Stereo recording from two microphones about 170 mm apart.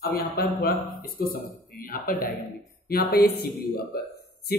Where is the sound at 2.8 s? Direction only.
70° left (ahead or behind).